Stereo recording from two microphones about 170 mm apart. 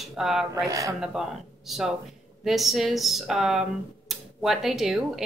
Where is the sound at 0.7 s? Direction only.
20° right (ahead or behind).